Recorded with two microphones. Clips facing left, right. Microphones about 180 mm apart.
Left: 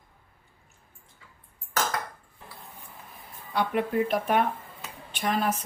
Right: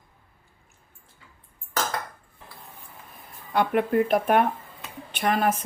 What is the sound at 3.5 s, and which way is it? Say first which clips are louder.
Speech: right 4 dB; 55° right (ahead or behind).